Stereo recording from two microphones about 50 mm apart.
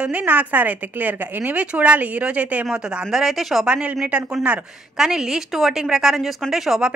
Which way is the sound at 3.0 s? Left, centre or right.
Centre.